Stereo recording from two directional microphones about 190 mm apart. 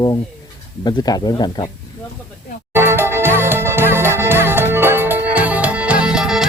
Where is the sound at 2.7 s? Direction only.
10° right (ahead or behind).